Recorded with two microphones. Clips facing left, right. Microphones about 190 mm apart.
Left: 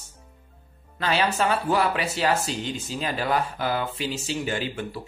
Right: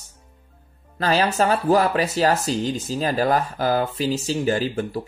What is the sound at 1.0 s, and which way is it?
Speech, 40° right (ahead or behind).